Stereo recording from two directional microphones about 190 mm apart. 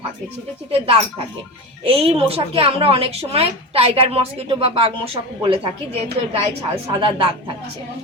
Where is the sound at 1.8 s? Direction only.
30° right (ahead or behind).